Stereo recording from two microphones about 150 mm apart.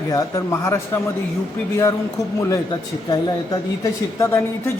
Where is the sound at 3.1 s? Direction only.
25° left (ahead or behind).